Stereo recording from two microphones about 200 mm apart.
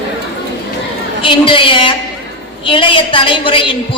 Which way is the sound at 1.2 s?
25° left (ahead or behind).